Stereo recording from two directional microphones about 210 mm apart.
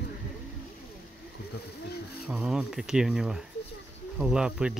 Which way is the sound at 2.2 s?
Centre (ahead or behind).